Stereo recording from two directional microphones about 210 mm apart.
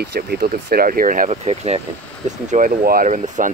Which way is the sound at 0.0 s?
50° right (ahead or behind).